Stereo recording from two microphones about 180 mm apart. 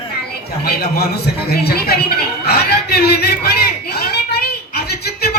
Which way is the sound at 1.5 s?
60° left (ahead or behind).